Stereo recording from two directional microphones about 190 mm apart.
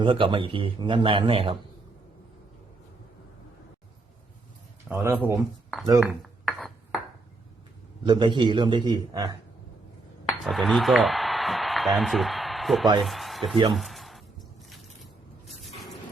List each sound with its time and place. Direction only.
0.0 s a man's voice: 25° right (ahead or behind)
4.9 s speech: 10° right (ahead or behind)
6.0 s dishes: centre (ahead or behind)
8.0 s a man's voice: 25° right (ahead or behind)
10.4 s a man's voice: centre (ahead or behind)
13.7 s a sound: centre (ahead or behind)